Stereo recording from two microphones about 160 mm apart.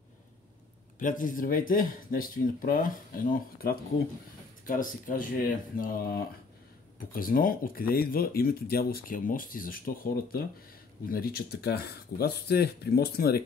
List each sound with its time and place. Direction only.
0.9 s speech: 55° left (ahead or behind); by 13.4 s 75° left (ahead or behind)